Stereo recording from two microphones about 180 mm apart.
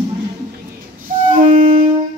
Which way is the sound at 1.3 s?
50° right (ahead or behind).